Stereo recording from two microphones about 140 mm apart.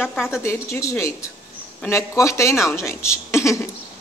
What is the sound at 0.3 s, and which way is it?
Speech, 20° left (ahead or behind).